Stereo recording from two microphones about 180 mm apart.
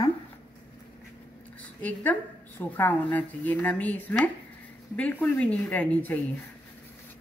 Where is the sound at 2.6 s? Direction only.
10° left (ahead or behind).